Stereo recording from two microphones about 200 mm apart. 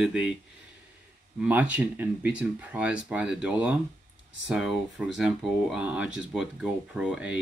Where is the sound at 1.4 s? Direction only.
5° right (ahead or behind).